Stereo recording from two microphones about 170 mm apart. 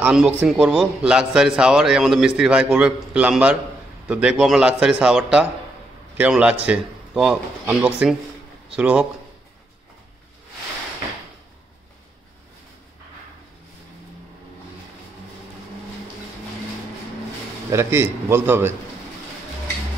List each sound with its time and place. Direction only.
0.0 s a man's voice: 5° right (ahead or behind)
17.6 s a man's voice: 15° right (ahead or behind)